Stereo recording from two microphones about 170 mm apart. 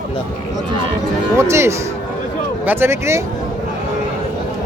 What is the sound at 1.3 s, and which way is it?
Music, 15° right (ahead or behind).